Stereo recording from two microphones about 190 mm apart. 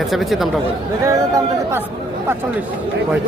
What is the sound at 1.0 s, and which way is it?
Speech, 15° right (ahead or behind).